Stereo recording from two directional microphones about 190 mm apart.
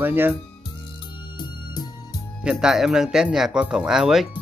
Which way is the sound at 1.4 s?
20° left (ahead or behind).